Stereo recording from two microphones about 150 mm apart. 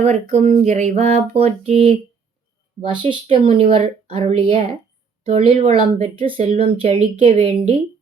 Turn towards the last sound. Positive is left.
turn(degrees=-45)  # may be behind; listen again after turning